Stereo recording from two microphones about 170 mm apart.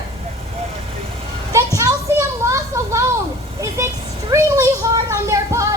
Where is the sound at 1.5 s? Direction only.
15° right (ahead or behind).